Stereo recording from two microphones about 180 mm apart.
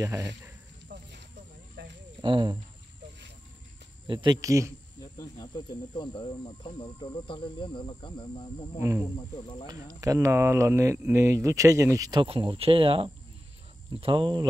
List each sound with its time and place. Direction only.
0.0 s speech: 15° right (ahead or behind)
2.2 s speech: 25° right (ahead or behind)
4.1 s speech: 25° right (ahead or behind)
5.0 s speech: 20° left (ahead or behind)
8.7 s speech: 15° right (ahead or behind)
9.1 s speech: 25° left (ahead or behind)
9.9 s speech: 15° right (ahead or behind)